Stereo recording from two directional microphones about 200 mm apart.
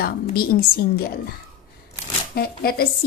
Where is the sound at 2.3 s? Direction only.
50° left (ahead or behind).